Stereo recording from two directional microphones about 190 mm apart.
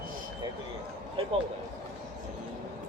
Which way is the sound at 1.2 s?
30° right (ahead or behind).